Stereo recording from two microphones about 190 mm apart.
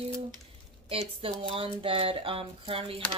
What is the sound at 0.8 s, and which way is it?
Speech, 30° right (ahead or behind).